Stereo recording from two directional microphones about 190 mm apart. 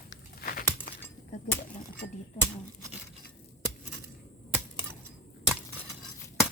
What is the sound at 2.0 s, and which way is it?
Speech, 35° left (ahead or behind).